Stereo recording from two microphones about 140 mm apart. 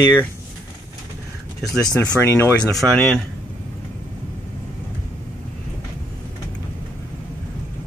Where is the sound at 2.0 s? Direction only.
20° left (ahead or behind).